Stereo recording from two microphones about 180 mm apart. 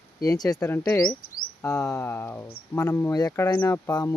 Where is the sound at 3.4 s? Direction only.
10° left (ahead or behind).